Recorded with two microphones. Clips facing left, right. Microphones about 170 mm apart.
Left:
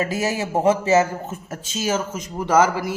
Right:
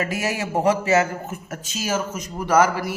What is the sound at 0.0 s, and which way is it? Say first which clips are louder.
Speech: left 2 dB; 25° left (ahead or behind).